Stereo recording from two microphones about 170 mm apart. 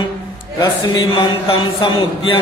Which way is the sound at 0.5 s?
25° left (ahead or behind).